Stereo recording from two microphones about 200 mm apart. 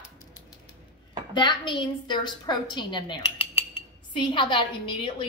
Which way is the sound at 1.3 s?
25° left (ahead or behind).